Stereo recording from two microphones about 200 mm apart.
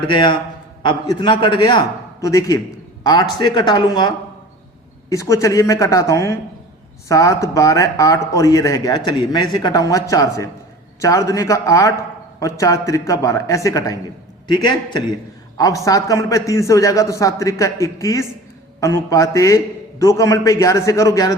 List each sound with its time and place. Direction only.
0.1 s a man's voice: 25° left (ahead or behind)